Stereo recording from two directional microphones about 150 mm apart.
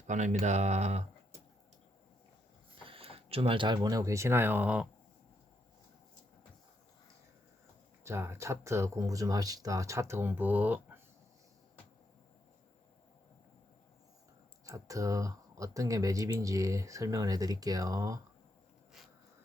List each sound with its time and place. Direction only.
0.1 s speech: 50° right (ahead or behind)
2.8 s speech: 35° right (ahead or behind); by 4.9 s 10° right (ahead or behind)
8.0 s speech: 15° right (ahead or behind)
14.6 s speech: 20° right (ahead or behind)